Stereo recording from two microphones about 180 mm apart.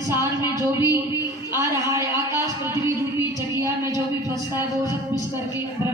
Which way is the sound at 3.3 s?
15° right (ahead or behind).